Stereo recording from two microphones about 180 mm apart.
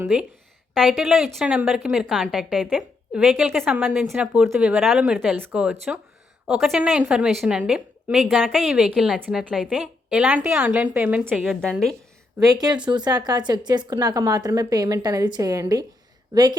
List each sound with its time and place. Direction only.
0.7 s a woman's voice: centre (ahead or behind)
12.4 s a woman's voice: 20° right (ahead or behind)